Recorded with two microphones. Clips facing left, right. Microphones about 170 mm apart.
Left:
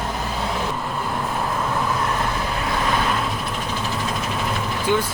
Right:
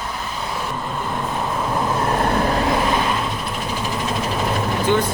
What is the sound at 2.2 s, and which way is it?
Vehicle, 50° right (ahead or behind).